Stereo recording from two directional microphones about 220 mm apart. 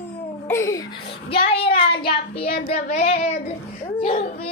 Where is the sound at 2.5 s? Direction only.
45° left (ahead or behind).